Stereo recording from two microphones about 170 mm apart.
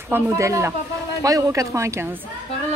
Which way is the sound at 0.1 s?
15° right (ahead or behind).